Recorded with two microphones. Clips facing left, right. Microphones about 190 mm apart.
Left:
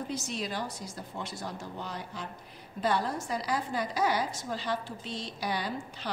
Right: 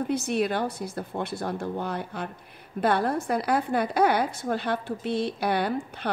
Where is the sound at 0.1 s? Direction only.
60° right (ahead or behind).